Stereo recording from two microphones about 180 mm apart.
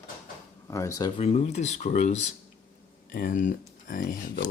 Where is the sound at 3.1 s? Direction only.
50° left (ahead or behind).